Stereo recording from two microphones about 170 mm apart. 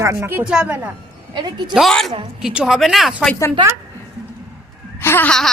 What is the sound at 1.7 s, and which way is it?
Baby cry, centre (ahead or behind).